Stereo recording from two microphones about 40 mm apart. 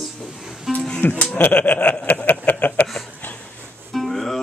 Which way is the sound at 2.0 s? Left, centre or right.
Left.